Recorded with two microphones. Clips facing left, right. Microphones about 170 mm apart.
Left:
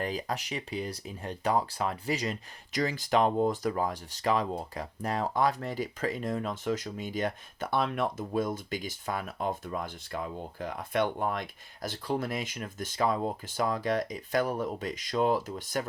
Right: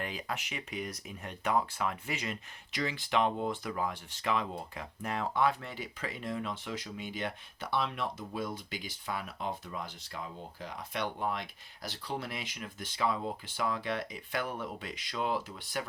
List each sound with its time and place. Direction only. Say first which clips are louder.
0.0 s speech: left 5 dB; 35° left (ahead or behind)